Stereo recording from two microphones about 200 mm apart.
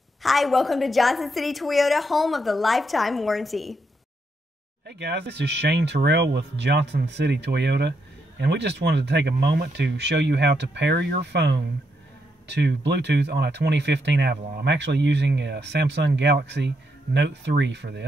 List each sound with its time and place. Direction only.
0.2 s a woman's voice: centre (ahead or behind)
4.8 s speech: 55° right (ahead or behind)
12.4 s speech: 60° right (ahead or behind)